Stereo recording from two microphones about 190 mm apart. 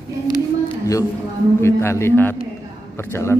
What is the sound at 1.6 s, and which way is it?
Speech, 15° left (ahead or behind).